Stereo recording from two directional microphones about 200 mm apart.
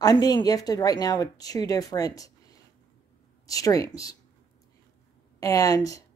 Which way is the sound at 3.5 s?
15° left (ahead or behind).